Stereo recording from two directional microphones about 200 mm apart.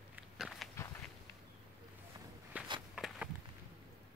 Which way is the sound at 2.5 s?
5° right (ahead or behind).